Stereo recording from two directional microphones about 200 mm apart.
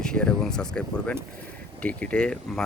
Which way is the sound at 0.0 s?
5° left (ahead or behind).